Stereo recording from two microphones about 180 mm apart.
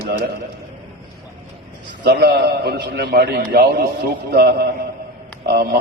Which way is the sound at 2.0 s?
60° right (ahead or behind).